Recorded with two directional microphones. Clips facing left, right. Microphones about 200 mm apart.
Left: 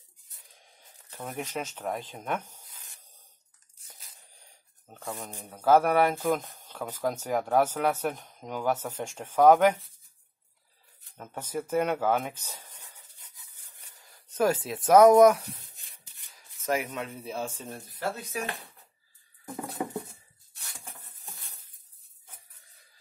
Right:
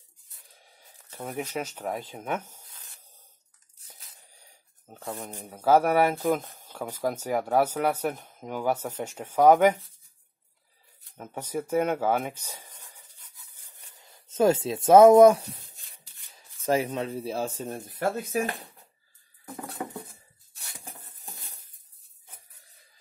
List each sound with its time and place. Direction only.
0.7 s speech: 10° right (ahead or behind)
4.4 s a sound: 5° right (ahead or behind)
5.2 s speech: 10° right (ahead or behind)
11.1 s speech: 10° right (ahead or behind)
13.6 s a sound: 15° right (ahead or behind)
16.3 s speech: 30° right (ahead or behind)
19.4 s patter: centre (ahead or behind)